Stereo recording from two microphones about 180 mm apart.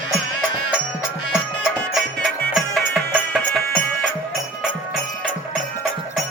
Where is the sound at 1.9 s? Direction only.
Centre (ahead or behind).